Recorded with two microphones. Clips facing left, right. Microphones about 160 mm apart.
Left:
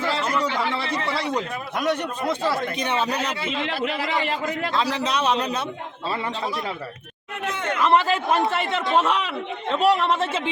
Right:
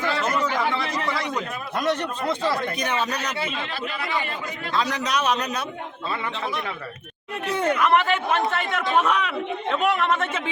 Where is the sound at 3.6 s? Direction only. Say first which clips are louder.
Left 5 dB; 85° left.